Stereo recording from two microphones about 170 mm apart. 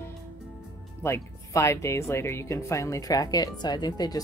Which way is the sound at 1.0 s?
15° left (ahead or behind).